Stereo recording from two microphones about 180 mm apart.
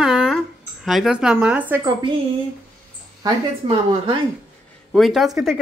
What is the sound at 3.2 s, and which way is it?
Speech, 25° right (ahead or behind).